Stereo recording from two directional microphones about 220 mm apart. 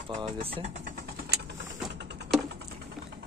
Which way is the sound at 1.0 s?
45° right (ahead or behind).